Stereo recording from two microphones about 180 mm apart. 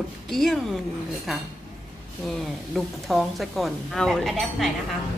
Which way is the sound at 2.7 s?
Centre (ahead or behind).